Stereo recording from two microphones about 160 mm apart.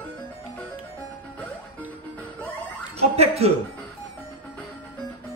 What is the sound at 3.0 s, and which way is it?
Speech, 40° right (ahead or behind).